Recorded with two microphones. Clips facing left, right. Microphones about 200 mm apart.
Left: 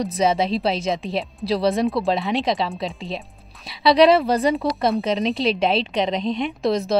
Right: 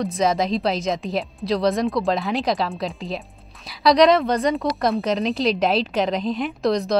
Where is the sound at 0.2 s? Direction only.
Centre (ahead or behind).